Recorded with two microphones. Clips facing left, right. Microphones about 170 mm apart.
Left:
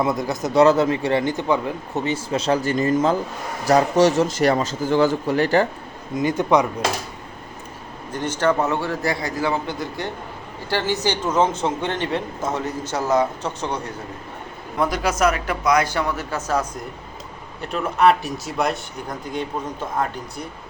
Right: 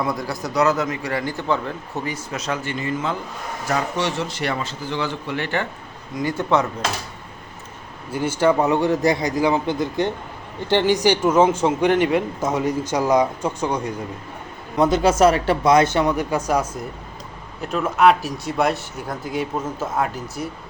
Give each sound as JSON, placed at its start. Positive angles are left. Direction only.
{"t": 0.0, "sound": "speech", "side_deg": 20}
{"t": 2.0, "sound": "a man's voice", "side_deg": 30}
{"t": 6.1, "sound": "speech", "side_deg": 20}
{"t": 8.1, "sound": "a man's voice", "side_deg": -10}
{"t": 14.8, "sound": "speech", "side_deg": -25}
{"t": 17.6, "sound": "speech", "side_deg": 0}